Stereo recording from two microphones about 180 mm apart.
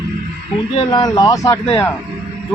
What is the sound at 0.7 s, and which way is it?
Speech, 25° left (ahead or behind).